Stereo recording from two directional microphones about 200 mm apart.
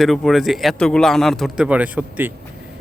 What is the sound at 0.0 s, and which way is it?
Speech, centre (ahead or behind).